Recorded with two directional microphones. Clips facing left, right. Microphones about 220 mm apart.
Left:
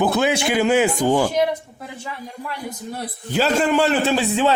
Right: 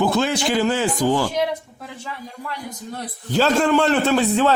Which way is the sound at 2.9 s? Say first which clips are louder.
Right 2 dB; 10° left (ahead or behind).